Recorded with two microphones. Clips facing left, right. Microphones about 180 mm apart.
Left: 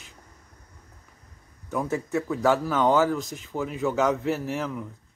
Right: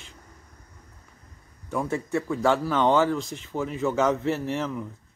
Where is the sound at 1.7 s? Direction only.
5° left (ahead or behind).